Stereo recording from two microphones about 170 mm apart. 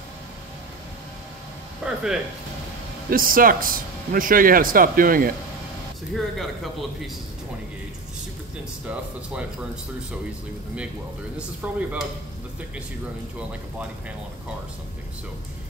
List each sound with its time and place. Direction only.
1.8 s a sound: 5° right (ahead or behind)
3.1 s a man's voice: 55° right (ahead or behind)
6.1 s speech: centre (ahead or behind)
11.3 s speech: 10° right (ahead or behind)